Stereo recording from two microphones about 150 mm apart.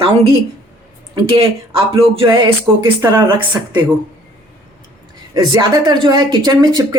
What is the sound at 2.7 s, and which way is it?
Speech, 15° right (ahead or behind).